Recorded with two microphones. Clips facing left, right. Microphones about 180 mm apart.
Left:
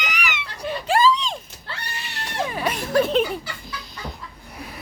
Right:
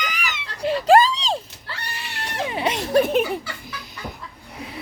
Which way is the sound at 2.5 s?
20° right (ahead or behind).